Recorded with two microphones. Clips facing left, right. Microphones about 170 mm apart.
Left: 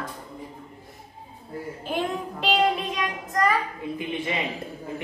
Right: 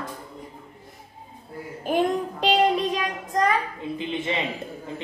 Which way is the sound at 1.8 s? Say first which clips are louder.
Right 6 dB; 45° right (ahead or behind).